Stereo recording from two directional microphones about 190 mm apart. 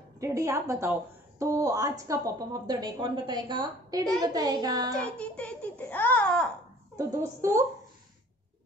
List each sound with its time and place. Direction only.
0.2 s a woman's voice: 15° right (ahead or behind)
5.0 s a sound: 5° left (ahead or behind)
7.0 s a woman's voice: 15° right (ahead or behind)